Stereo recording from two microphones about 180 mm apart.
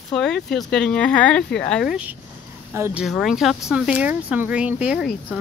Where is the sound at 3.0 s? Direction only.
Centre (ahead or behind).